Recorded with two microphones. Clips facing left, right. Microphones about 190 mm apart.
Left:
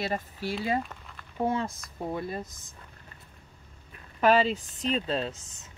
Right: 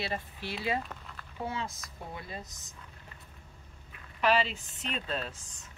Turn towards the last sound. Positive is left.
turn(degrees=25)  # may be behind; listen again after turning